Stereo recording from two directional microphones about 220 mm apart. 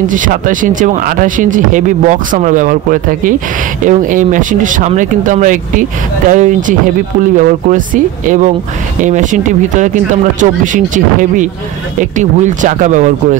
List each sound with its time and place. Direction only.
0.1 s speech: 35° right (ahead or behind)